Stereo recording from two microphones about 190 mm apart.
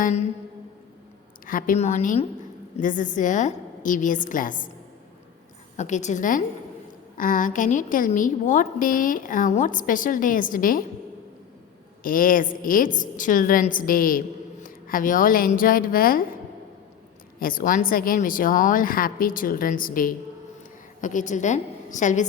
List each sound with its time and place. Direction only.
0.0 s a sound: 35° left (ahead or behind)
1.5 s a woman's voice: 45° left (ahead or behind)
5.7 s a woman's voice: 40° left (ahead or behind)
12.0 s a woman's voice: 45° left (ahead or behind)
17.4 s a woman's voice: 45° left (ahead or behind)